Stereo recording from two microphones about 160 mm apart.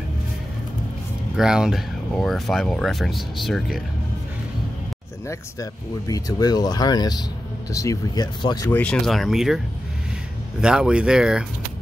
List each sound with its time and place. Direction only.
1.3 s speech: 5° right (ahead or behind)
5.3 s speech: 20° left (ahead or behind)
8.6 s speech: 10° left (ahead or behind)
9.0 s speech: centre (ahead or behind)
10.6 s speech: 5° right (ahead or behind)